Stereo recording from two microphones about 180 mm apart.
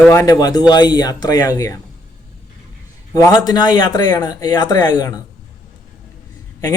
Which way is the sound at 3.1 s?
20° left (ahead or behind).